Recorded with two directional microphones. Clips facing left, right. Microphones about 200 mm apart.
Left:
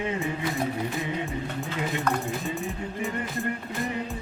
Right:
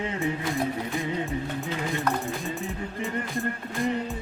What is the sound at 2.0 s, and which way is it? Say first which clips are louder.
Music: even; centre (ahead or behind).